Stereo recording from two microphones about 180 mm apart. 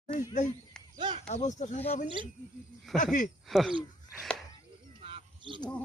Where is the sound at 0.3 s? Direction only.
45° left (ahead or behind).